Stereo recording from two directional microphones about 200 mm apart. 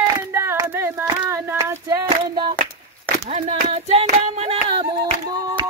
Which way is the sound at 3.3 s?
35° right (ahead or behind).